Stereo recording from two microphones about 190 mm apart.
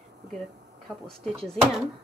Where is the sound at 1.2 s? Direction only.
5° left (ahead or behind).